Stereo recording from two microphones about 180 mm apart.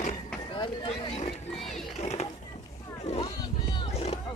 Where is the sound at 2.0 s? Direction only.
35° left (ahead or behind).